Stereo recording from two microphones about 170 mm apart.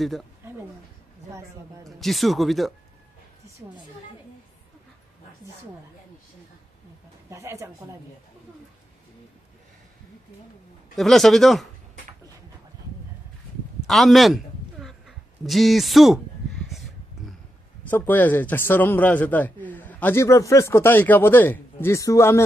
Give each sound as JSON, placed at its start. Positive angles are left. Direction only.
{"t": 1.9, "sound": "speech", "side_deg": 0}
{"t": 7.2, "sound": "speech", "side_deg": -15}
{"t": 11.0, "sound": "speech", "side_deg": 0}
{"t": 13.8, "sound": "a sound", "side_deg": 0}
{"t": 17.8, "sound": "a man's voice", "side_deg": 10}